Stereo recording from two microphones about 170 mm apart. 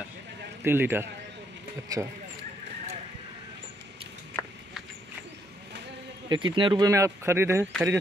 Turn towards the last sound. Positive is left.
turn(degrees=-15)  # may be behind; listen again after turning